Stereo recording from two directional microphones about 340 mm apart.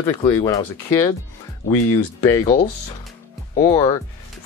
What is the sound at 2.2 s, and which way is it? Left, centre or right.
Speech, centre.